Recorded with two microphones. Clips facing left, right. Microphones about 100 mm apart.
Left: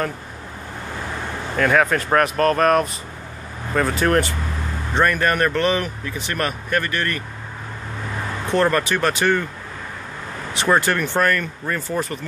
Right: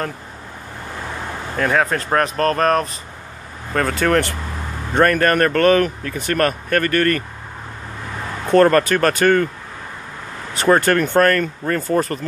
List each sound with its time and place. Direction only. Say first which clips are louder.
1.6 s speech: left 1 dB; 30° right (ahead or behind)
4.0 s speech: right 2 dB; 65° right (ahead or behind)
4.9 s speech: right 4 dB; 50° right (ahead or behind)
8.5 s speech: right 6 dB; 45° right (ahead or behind)
10.5 s speech: right 4 dB; 45° right (ahead or behind)